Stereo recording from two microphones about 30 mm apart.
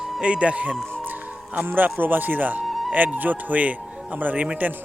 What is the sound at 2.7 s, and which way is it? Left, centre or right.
Music, centre.